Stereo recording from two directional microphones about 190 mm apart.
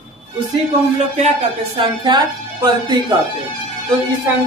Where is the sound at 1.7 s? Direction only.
20° right (ahead or behind).